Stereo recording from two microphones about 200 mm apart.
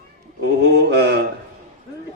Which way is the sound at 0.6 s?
55° right (ahead or behind).